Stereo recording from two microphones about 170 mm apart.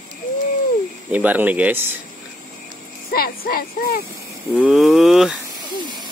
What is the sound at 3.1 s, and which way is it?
Speech, 60° left (ahead or behind).